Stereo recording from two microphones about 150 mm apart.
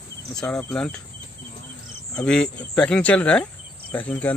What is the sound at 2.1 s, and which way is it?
Speech, 5° left (ahead or behind).